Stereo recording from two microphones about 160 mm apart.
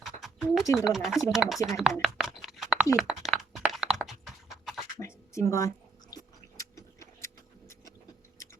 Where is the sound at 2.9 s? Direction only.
Centre (ahead or behind).